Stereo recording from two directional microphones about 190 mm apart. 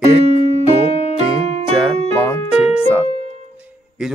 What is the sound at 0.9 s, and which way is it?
Music, 30° left (ahead or behind).